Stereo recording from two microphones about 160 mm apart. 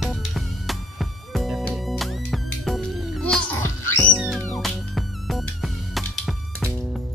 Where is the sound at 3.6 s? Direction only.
15° left (ahead or behind).